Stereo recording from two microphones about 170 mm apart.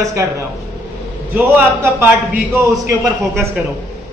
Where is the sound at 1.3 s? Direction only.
10° right (ahead or behind).